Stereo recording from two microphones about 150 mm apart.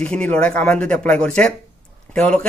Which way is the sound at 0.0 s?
10° left (ahead or behind).